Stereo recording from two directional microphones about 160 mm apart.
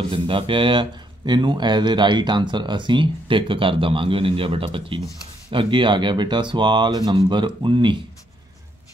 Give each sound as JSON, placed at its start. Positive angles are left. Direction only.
{"t": 0.1, "sound": "speech", "side_deg": -35}